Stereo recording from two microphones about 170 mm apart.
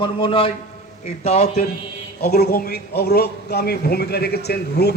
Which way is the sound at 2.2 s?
65° left (ahead or behind).